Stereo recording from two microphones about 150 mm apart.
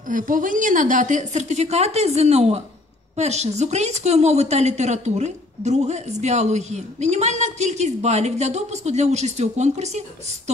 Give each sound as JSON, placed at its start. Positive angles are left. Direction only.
{"t": 0.1, "sound": "a woman's voice", "side_deg": -60}